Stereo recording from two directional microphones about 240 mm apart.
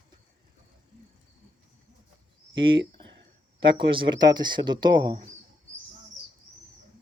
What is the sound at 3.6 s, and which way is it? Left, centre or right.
Speech, right.